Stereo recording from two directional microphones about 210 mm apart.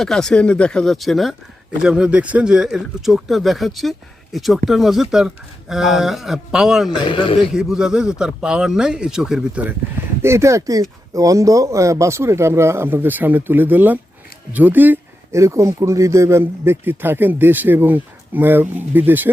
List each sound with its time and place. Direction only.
0.0 s speech: centre (ahead or behind)
7.0 s a man's voice: 25° left (ahead or behind)
7.3 s speech: centre (ahead or behind)